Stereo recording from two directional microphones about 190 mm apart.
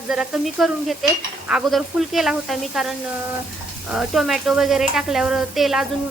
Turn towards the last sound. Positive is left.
turn(degrees=0)  # may be behind; listen again after turning